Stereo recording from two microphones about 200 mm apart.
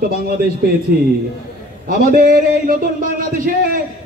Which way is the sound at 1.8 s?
45° right (ahead or behind).